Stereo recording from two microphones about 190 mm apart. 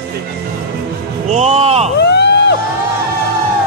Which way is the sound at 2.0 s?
60° left (ahead or behind).